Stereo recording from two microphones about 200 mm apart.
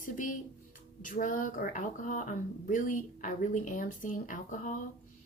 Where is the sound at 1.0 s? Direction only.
40° left (ahead or behind).